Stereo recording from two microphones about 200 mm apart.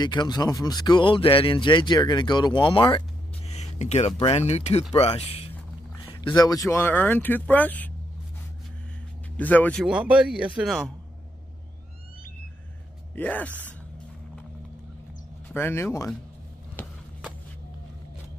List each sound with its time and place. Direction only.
0.0 s speech: 20° left (ahead or behind)
9.4 s speech: 10° left (ahead or behind)
9.8 s speech: 5° right (ahead or behind)
13.1 s speech: 10° left (ahead or behind)
15.5 s speech: 10° left (ahead or behind)
16.8 s a sound: 10° left (ahead or behind)